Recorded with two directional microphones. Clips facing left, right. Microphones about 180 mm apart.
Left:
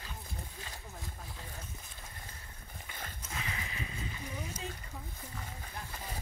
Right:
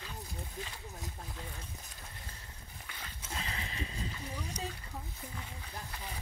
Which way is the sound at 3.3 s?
35° right (ahead or behind).